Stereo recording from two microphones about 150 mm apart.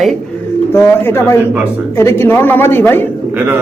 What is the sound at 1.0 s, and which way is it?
A man's voice, 15° left (ahead or behind).